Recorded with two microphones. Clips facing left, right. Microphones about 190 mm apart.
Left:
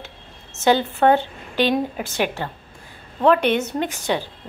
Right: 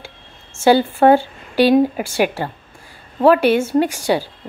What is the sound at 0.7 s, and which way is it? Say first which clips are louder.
A woman's voice: right 5 dB; 10° right (ahead or behind).